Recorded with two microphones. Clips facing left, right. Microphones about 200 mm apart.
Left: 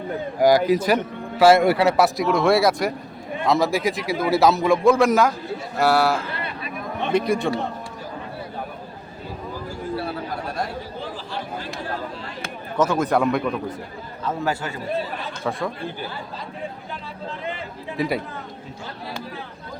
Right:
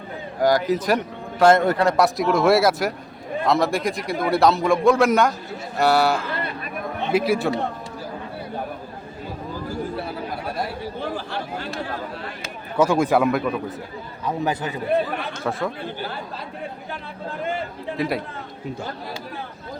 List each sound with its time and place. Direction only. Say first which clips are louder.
0.4 s a man's voice: left 2 dB; 10° left (ahead or behind); by 7.5 s 5° right (ahead or behind)
12.7 s a man's voice: right 2 dB; 10° right (ahead or behind)
14.3 s a man's voice: right 1 dB; 20° right (ahead or behind)
17.9 s a man's voice: left 1 dB; centre (ahead or behind)